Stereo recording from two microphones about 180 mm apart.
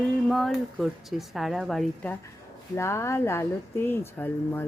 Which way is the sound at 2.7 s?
15° left (ahead or behind).